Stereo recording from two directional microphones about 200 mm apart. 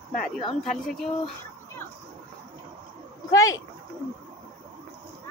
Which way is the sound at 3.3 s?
15° left (ahead or behind).